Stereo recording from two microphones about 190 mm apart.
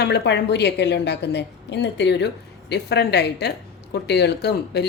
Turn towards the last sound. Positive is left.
turn(degrees=60)  # may be behind; listen again after turning